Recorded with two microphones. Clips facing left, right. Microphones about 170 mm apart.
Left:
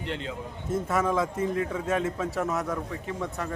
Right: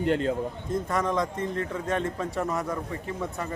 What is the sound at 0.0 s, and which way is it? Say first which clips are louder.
Speech: right 9 dB; 45° right (ahead or behind).